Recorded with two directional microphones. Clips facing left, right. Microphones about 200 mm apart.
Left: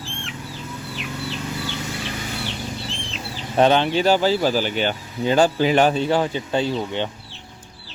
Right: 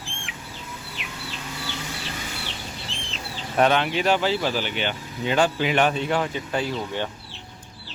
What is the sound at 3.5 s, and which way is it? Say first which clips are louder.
Speech: left 4 dB; 30° left (ahead or behind).